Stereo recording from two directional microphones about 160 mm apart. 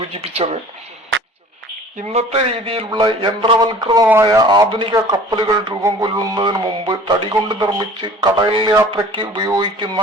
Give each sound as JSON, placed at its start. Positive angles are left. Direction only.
{"t": 0.0, "sound": "a man's voice", "side_deg": -35}
{"t": 2.0, "sound": "a man's voice", "side_deg": -40}